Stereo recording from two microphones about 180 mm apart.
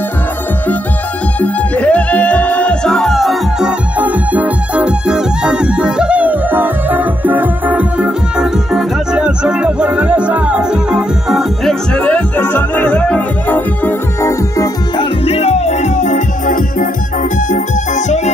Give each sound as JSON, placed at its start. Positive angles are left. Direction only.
{"t": 1.4, "sound": "music", "side_deg": 5}
{"t": 15.0, "sound": "music", "side_deg": 35}